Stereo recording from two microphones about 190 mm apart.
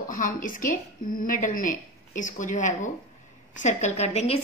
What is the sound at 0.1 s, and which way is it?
A woman's voice, 45° left (ahead or behind).